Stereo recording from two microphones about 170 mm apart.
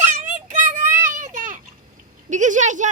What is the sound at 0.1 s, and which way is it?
Child singing, 45° right (ahead or behind).